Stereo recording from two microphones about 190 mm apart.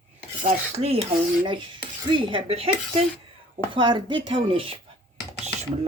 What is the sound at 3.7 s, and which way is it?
Speech, 25° right (ahead or behind).